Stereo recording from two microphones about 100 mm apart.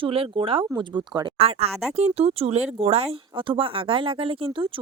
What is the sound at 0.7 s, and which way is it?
Speech, 45° right (ahead or behind).